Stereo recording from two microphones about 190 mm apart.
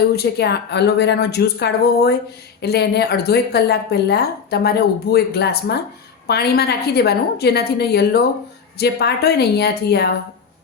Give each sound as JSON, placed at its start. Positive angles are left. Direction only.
{"t": 0.2, "sound": "a woman's voice", "side_deg": 60}